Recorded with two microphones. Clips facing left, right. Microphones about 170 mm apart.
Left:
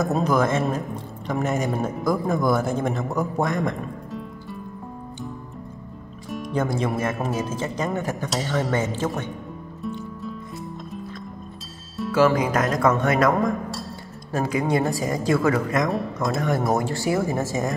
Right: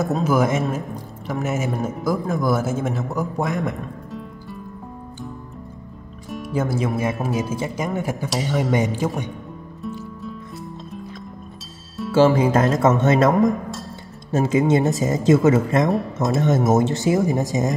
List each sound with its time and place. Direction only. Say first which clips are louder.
0.2 s a man's voice: right 2 dB; 10° right (ahead or behind)
6.3 s speech: right 1 dB; 5° right (ahead or behind)
9.8 s music: even; 5° right (ahead or behind)
12.1 s speech: right 4 dB; 25° right (ahead or behind)
14.3 s speech: right 5 dB; 25° right (ahead or behind)